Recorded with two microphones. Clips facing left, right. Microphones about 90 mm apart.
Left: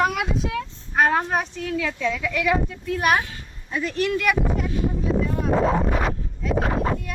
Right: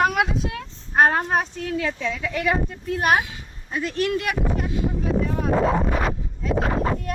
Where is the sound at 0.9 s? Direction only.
45° right (ahead or behind).